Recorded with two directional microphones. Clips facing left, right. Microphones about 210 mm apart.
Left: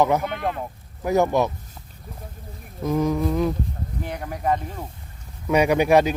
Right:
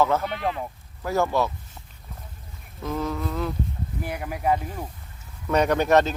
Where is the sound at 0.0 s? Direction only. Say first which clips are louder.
Left 2 dB; 15° left (ahead or behind).